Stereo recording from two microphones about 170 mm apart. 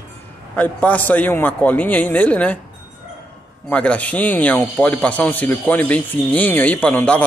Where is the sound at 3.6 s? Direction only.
10° left (ahead or behind).